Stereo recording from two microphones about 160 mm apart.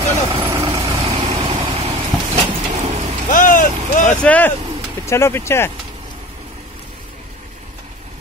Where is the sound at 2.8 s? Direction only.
40° right (ahead or behind).